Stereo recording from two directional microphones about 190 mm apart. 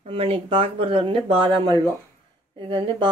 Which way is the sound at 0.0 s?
30° right (ahead or behind).